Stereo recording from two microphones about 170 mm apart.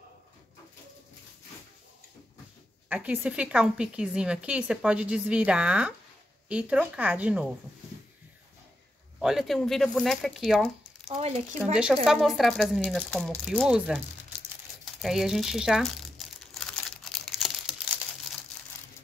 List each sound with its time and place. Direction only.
2.9 s a woman's voice: 10° right (ahead or behind)
9.2 s speech: centre (ahead or behind)
11.1 s speech: 40° right (ahead or behind)
11.9 s speech: centre (ahead or behind)
15.0 s crumpling: centre (ahead or behind)